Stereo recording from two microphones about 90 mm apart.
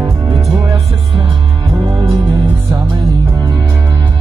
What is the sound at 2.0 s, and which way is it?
Music, 60° right (ahead or behind).